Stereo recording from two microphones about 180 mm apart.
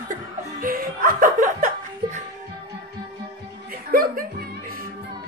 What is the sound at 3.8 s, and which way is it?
Music, 55° right (ahead or behind).